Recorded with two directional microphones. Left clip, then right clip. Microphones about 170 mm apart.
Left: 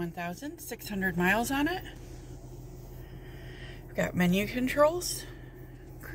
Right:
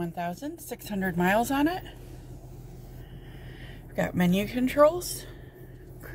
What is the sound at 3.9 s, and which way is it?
Speech, 15° right (ahead or behind).